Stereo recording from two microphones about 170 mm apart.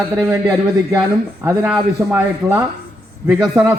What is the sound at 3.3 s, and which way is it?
Speech, 20° right (ahead or behind).